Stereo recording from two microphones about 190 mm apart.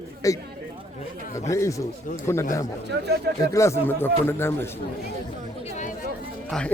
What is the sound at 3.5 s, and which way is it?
Speech, 15° left (ahead or behind).